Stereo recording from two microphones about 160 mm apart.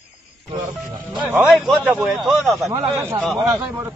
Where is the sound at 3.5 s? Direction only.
15° right (ahead or behind).